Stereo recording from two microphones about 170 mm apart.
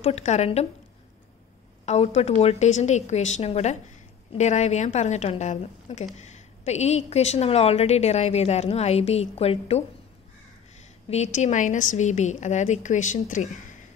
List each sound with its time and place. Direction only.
0.0 s a woman's voice: 40° left (ahead or behind)
1.9 s a woman's voice: 40° left (ahead or behind)
11.1 s a woman's voice: 40° left (ahead or behind)